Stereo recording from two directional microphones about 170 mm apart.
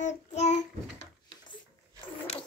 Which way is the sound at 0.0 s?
40° left (ahead or behind).